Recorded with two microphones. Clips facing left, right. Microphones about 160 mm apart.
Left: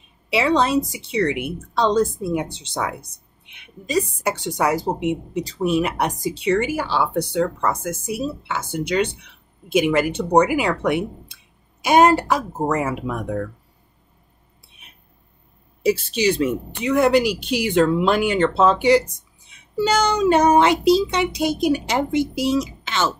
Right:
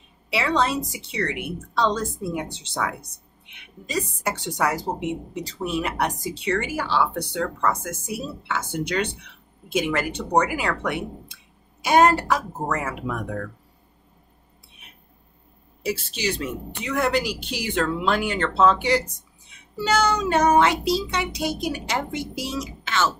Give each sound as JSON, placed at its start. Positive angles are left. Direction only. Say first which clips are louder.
{"t": 0.3, "sound": "speech", "louder": "left 5 dB", "side_deg": 20}
{"t": 15.8, "sound": "speech", "louder": "left 8 dB", "side_deg": 20}